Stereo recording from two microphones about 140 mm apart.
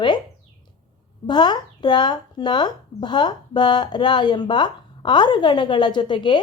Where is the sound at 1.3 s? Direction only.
30° left (ahead or behind).